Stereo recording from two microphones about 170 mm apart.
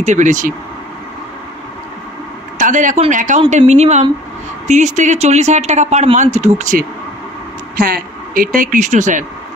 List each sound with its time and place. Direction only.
0.0 s speech: 45° right (ahead or behind)
2.6 s speech: 50° right (ahead or behind)
7.7 s a sound: 55° right (ahead or behind)
8.5 s speech: 45° right (ahead or behind)